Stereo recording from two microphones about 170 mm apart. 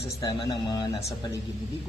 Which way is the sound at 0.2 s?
20° left (ahead or behind).